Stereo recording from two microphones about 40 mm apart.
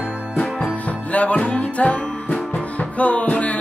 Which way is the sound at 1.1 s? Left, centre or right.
Left.